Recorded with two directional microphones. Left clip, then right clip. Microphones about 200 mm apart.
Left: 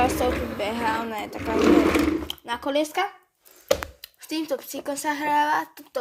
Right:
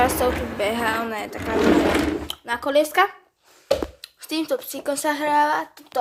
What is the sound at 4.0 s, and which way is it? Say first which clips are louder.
Speech: right 3 dB; centre (ahead or behind).